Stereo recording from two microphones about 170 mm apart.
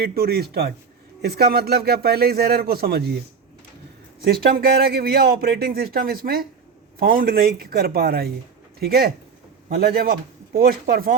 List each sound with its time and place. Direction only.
0.0 s a man's voice: 65° right (ahead or behind)
4.2 s speech: 65° right (ahead or behind)